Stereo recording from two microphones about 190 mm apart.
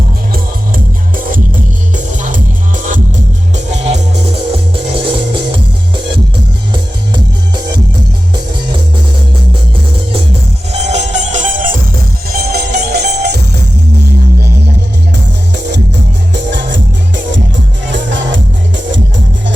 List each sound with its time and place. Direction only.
1.1 s music: 45° right (ahead or behind); by 6.0 s 25° right (ahead or behind)
10.7 s music: 35° right (ahead or behind)
12.3 s music: 55° right (ahead or behind)
16.3 s music: 65° right (ahead or behind)
17.9 s music: 70° right (ahead or behind)